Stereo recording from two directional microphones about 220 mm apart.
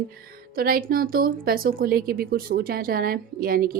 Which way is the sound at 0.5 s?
40° right (ahead or behind).